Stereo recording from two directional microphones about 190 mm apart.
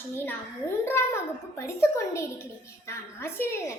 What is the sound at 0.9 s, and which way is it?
A child's voice, 15° left (ahead or behind).